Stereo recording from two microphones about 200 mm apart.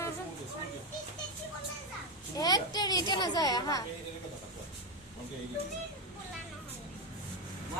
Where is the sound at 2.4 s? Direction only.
20° left (ahead or behind).